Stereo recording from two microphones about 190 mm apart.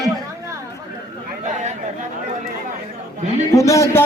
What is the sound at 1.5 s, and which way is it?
Chatter, 40° right (ahead or behind).